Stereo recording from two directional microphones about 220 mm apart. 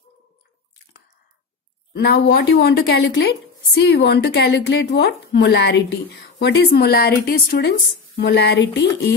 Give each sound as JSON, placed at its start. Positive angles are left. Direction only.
{"t": 2.0, "sound": "speech", "side_deg": 50}